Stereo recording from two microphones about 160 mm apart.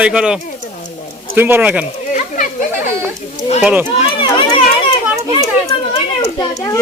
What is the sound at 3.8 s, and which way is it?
Run, 30° left (ahead or behind).